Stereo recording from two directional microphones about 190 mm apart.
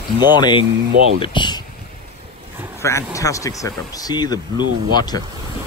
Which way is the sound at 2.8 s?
15° left (ahead or behind).